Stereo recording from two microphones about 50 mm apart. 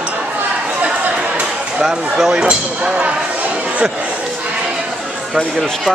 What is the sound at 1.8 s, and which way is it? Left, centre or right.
Speech, centre.